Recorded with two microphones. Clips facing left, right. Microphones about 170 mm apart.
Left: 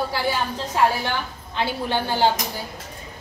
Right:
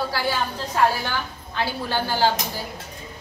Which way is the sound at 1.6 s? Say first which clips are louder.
Left 1 dB; 20° left (ahead or behind).